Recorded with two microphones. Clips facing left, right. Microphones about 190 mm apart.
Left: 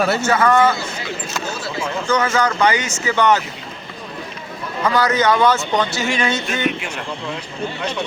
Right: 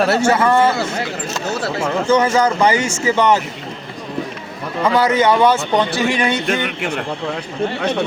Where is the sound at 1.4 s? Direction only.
70° right (ahead or behind).